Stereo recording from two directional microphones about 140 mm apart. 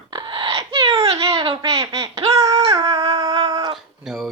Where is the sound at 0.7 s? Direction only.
40° right (ahead or behind).